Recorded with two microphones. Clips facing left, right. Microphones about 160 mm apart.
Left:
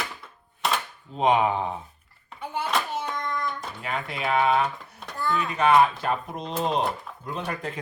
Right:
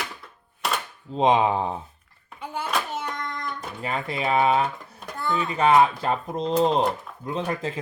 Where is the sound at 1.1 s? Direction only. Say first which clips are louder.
Right 2 dB; 30° right (ahead or behind).